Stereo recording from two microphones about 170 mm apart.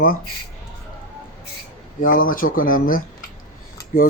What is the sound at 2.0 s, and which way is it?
Speech, 55° left (ahead or behind).